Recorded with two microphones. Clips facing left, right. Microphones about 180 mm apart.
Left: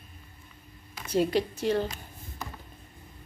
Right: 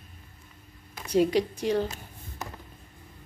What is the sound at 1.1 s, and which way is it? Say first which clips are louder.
Speech: right 2 dB; 10° right (ahead or behind).